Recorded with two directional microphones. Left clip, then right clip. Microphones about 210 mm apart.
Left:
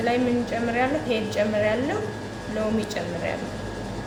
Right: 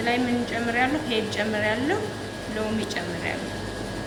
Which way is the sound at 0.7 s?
55° left (ahead or behind).